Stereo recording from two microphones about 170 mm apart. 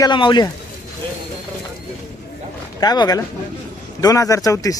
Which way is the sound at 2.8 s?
25° left (ahead or behind).